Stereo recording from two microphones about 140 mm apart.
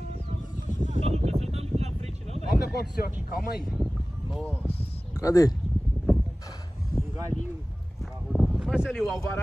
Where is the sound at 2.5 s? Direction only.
90° left.